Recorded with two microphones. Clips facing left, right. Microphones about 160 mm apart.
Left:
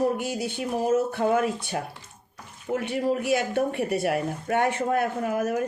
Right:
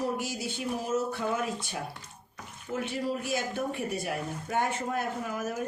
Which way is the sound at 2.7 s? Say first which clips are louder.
Left 6 dB; 60° left (ahead or behind).